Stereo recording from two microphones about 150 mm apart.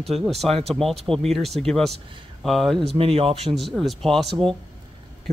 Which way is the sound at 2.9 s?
40° right (ahead or behind).